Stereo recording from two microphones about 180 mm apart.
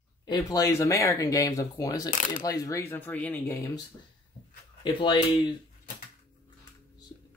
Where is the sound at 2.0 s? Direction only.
50° left (ahead or behind).